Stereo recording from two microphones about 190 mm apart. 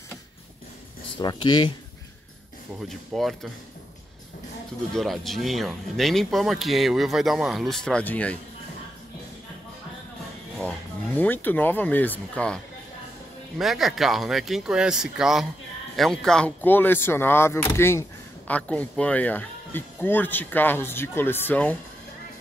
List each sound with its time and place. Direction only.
1.1 s speech: 25° left (ahead or behind)
2.9 s speech: centre (ahead or behind)
4.9 s speech: centre (ahead or behind)
11.1 s speech: 10° left (ahead or behind)
13.6 s speech: centre (ahead or behind)